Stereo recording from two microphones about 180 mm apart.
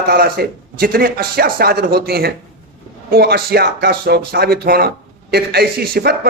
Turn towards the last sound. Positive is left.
turn(degrees=-60)  # may be behind; listen again after turning